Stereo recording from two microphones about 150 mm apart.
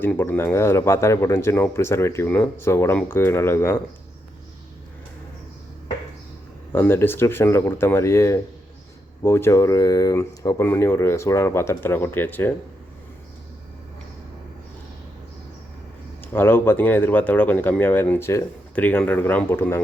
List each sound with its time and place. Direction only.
0.0 s speech: 10° left (ahead or behind)
6.7 s speech: 15° left (ahead or behind)
16.2 s speech: 15° left (ahead or behind)